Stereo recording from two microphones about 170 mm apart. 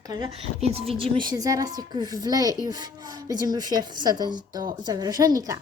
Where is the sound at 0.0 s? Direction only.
25° right (ahead or behind).